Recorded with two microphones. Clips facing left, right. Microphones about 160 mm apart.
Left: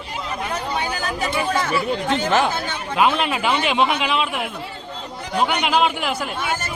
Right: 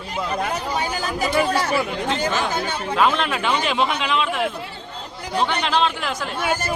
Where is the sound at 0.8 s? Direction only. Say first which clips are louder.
Right 1 dB; 35° right (ahead or behind).